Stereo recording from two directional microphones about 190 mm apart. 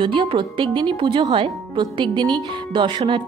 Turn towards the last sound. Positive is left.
turn(degrees=-25)  # may be behind; listen again after turning